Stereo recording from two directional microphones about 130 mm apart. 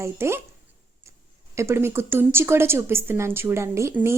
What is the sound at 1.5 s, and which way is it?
Speech, 20° right (ahead or behind).